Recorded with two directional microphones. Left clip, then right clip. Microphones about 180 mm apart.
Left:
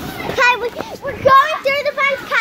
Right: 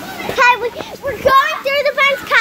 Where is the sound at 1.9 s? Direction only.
50° right (ahead or behind).